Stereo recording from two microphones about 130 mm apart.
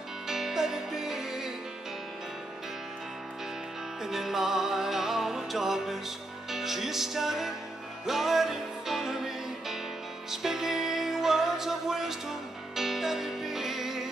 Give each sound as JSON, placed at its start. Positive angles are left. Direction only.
{"t": 0.3, "sound": "music", "side_deg": -5}
{"t": 4.0, "sound": "music", "side_deg": 0}